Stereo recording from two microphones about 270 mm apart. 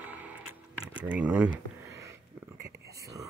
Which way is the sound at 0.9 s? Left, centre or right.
Centre.